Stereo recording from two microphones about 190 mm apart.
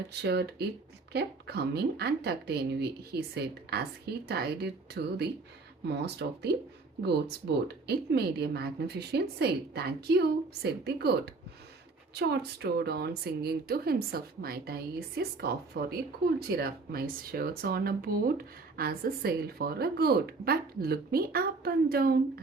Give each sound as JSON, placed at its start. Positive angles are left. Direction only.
{"t": 0.2, "sound": "a woman's voice", "side_deg": -60}